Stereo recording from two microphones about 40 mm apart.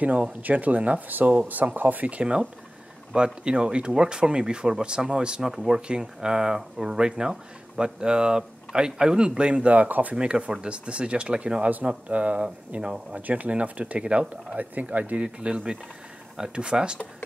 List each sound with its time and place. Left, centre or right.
0.0 s speech: right
3.4 s speech: right
9.8 s speech: right
10.1 s speech: right
14.6 s speech: right
15.2 s speech: right